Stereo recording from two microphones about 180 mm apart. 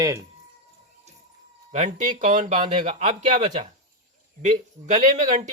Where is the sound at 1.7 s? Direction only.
40° right (ahead or behind).